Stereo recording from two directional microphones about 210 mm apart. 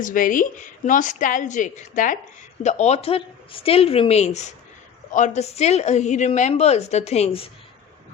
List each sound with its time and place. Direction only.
0.0 s a woman's voice: 40° left (ahead or behind)